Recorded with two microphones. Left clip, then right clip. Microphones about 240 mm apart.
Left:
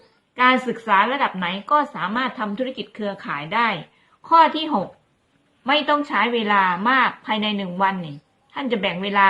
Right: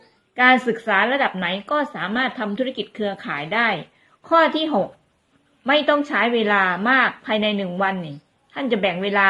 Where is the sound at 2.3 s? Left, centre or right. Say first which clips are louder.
Right 1 dB; centre.